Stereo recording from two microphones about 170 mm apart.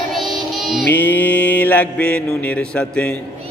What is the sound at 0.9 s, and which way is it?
Mantra, 10° left (ahead or behind).